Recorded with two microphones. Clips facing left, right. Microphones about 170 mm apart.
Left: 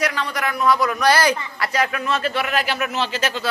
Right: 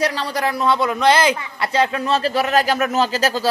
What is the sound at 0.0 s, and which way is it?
A man's voice, 30° right (ahead or behind).